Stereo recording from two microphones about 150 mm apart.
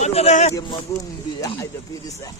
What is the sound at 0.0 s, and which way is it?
Speech, 45° left (ahead or behind).